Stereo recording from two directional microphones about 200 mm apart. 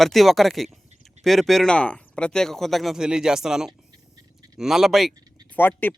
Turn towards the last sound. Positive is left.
turn(degrees=10)  # may be behind; listen again after turning